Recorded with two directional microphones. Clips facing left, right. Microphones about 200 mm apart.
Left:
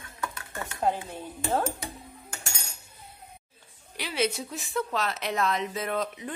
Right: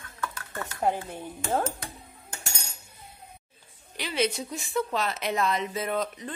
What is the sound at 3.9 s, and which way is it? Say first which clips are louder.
A woman's voice: right 1 dB; 5° left (ahead or behind).